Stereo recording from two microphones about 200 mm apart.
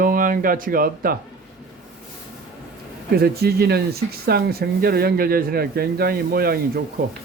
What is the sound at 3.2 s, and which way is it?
Mantra, 50° right (ahead or behind).